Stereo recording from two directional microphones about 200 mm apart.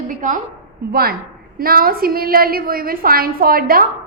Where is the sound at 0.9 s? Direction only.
50° right (ahead or behind).